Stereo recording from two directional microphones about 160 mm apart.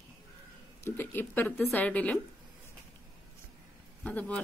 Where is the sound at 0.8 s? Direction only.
10° left (ahead or behind).